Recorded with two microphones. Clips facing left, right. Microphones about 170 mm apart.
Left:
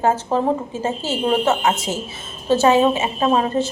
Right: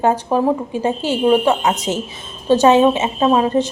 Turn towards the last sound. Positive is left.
turn(degrees=-15)  # may be behind; listen again after turning